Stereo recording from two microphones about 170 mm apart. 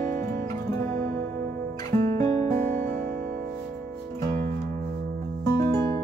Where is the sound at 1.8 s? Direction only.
20° left (ahead or behind).